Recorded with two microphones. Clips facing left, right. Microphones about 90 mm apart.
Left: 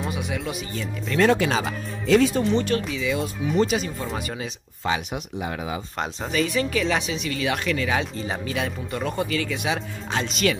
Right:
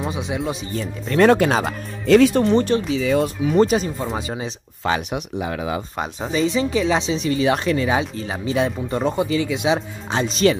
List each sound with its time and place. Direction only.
0.1 s speech: 25° right (ahead or behind)
0.7 s speech: 45° right (ahead or behind)
2.0 s speech: 65° right (ahead or behind)
3.0 s speech: 40° right (ahead or behind)
4.1 s speech: 30° right (ahead or behind)
4.8 s speech: 65° right (ahead or behind)
5.9 s speech: 20° right (ahead or behind)
8.0 s speech: 5° right (ahead or behind)
8.5 s speech: 25° right (ahead or behind)
9.8 s speech: 30° right (ahead or behind)